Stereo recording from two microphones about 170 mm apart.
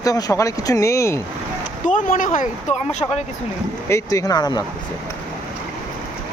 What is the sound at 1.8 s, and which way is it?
Speech, 50° left (ahead or behind).